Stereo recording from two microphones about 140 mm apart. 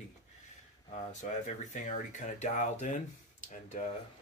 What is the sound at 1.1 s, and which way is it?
Speech, 60° left (ahead or behind).